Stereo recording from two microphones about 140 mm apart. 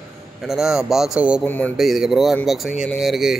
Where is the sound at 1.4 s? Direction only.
15° left (ahead or behind).